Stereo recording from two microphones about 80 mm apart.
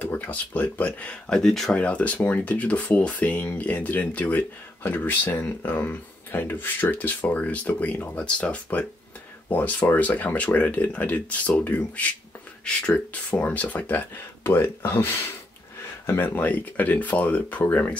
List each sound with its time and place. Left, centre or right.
0.0 s speech: centre
1.8 s speech: centre
16.3 s speech: left